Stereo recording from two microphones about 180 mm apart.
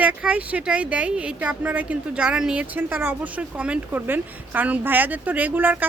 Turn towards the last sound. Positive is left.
turn(degrees=-10)  # may be behind; listen again after turning